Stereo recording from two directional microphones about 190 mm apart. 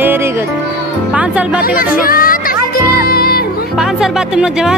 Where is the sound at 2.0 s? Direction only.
50° left (ahead or behind).